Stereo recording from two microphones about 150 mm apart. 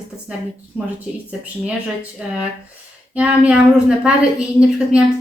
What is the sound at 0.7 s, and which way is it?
Speech, 5° right (ahead or behind).